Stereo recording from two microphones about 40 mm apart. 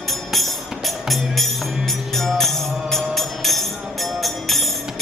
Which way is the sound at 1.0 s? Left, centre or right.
Centre.